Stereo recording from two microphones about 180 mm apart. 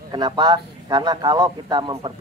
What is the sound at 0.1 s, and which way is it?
A man's voice, 25° right (ahead or behind).